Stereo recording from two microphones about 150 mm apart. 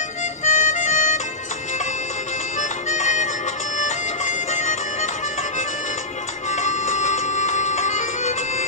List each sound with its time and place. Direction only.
0.4 s music: 55° left (ahead or behind)
2.9 s music: 55° left (ahead or behind)
6.5 s music: 55° left (ahead or behind)